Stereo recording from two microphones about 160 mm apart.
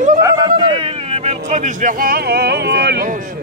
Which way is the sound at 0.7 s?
35° right (ahead or behind).